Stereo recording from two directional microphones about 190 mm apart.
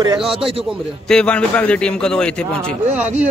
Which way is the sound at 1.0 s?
5° left (ahead or behind).